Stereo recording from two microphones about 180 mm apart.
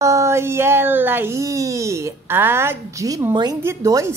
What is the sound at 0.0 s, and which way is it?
A woman's voice, 15° right (ahead or behind).